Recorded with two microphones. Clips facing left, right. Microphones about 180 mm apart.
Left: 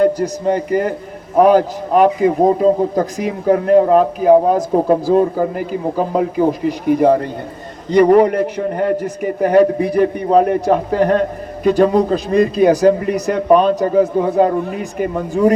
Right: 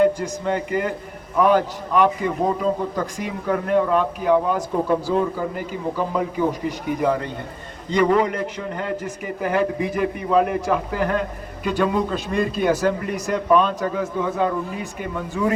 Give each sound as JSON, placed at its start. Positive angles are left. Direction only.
{"t": 0.0, "sound": "a man's voice", "side_deg": 40}